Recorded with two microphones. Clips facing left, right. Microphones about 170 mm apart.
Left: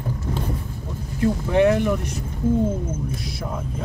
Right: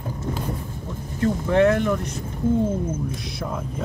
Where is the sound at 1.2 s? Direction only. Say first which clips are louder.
Even; 15° left (ahead or behind).